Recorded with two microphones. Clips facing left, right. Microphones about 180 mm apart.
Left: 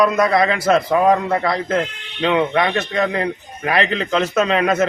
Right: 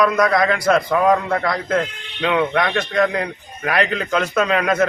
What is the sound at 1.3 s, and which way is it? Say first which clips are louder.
A man's voice: left 1 dB; 5° left (ahead or behind).